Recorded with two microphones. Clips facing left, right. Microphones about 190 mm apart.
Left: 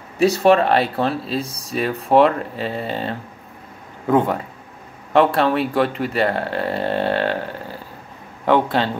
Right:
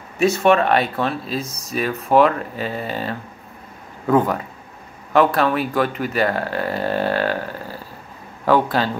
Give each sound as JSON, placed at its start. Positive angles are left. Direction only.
{"t": 0.2, "sound": "speech", "side_deg": 35}